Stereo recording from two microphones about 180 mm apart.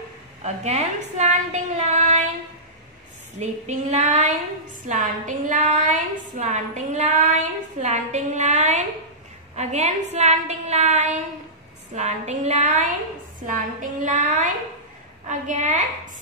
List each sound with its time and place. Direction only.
0.4 s a woman's voice: 40° right (ahead or behind)
3.3 s a woman's voice: 40° right (ahead or behind)